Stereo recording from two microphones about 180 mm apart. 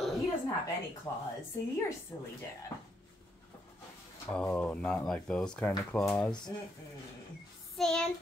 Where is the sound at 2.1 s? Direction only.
15° left (ahead or behind).